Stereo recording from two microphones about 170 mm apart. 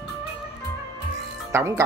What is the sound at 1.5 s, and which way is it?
Speech, 15° right (ahead or behind).